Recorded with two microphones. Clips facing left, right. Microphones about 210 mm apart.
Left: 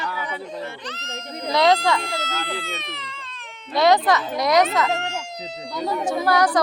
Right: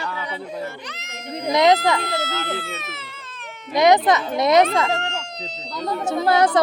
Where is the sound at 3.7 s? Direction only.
20° right (ahead or behind).